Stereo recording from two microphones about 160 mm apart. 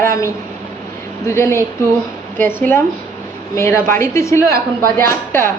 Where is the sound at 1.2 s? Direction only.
15° left (ahead or behind).